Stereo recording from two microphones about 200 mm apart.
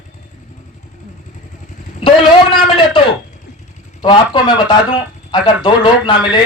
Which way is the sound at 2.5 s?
25° left (ahead or behind).